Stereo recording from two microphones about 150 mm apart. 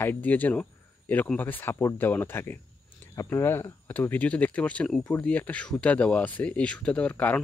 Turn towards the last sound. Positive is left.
turn(degrees=10)  # may be behind; listen again after turning